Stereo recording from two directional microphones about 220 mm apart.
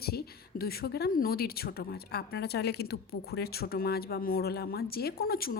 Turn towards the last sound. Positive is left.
turn(degrees=45)  # may be behind; listen again after turning